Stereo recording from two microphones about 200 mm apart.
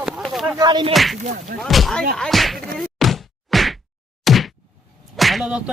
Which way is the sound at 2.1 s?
Centre (ahead or behind).